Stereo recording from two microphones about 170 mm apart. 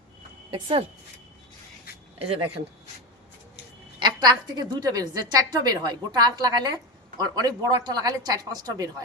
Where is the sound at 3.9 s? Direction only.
25° right (ahead or behind).